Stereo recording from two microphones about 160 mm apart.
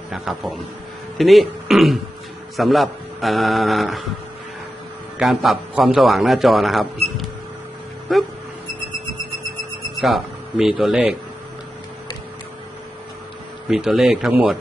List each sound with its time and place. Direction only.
0.1 s speech: centre (ahead or behind)
5.2 s speech: centre (ahead or behind)
9.9 s speech: centre (ahead or behind)
13.7 s speech: centre (ahead or behind)